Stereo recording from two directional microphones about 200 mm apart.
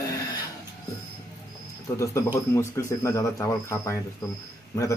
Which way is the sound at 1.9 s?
15° left (ahead or behind).